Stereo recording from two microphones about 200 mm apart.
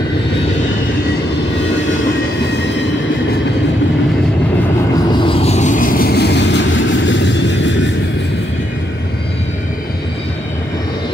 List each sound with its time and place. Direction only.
5.1 s vehicle: 25° left (ahead or behind); by 7.9 s 65° left (ahead or behind)